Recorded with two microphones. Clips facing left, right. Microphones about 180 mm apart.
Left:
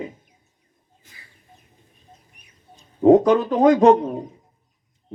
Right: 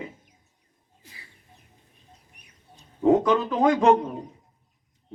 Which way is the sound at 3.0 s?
40° left (ahead or behind).